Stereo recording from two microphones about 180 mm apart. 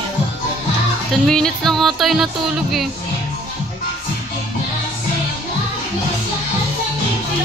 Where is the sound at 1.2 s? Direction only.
Centre (ahead or behind).